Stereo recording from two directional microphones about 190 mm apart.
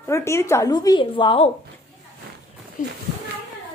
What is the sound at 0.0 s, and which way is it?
A woman's voice, 15° left (ahead or behind).